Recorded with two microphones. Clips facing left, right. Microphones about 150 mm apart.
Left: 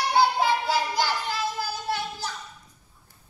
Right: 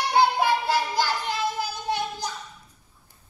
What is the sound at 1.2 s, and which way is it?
Child singing, 20° right (ahead or behind).